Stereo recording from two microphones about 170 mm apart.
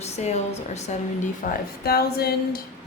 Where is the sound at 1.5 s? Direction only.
65° left (ahead or behind).